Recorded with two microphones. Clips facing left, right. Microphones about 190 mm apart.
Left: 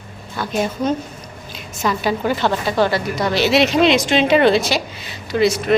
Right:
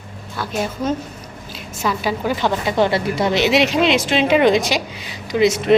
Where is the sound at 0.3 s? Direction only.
5° right (ahead or behind).